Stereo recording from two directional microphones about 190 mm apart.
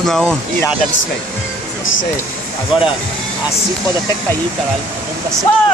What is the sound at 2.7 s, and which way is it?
Speech, 30° left (ahead or behind).